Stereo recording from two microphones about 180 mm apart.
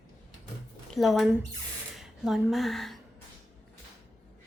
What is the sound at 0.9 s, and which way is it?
A woman's voice, centre (ahead or behind).